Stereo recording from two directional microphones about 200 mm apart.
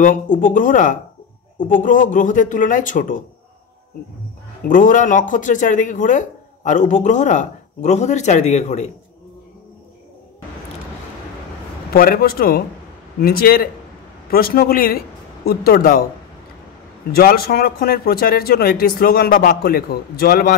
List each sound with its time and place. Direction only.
0.0 s speech: 40° left (ahead or behind)
4.6 s speech: 40° left (ahead or behind)
11.9 s speech: 45° left (ahead or behind)
17.1 s speech: 50° left (ahead or behind)